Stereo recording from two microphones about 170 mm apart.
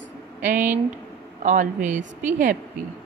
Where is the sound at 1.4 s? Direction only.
45° right (ahead or behind).